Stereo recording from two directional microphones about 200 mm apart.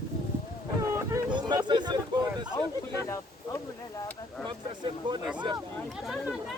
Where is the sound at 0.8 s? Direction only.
15° right (ahead or behind).